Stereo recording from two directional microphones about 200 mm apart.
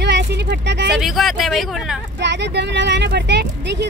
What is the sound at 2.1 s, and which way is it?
Speech, 60° right (ahead or behind).